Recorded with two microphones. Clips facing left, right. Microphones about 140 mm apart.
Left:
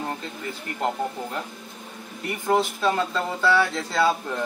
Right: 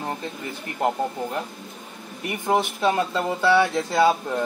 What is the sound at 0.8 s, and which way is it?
Speech, 15° right (ahead or behind).